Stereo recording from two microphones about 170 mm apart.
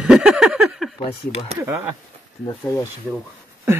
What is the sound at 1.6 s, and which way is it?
Speech, 15° right (ahead or behind).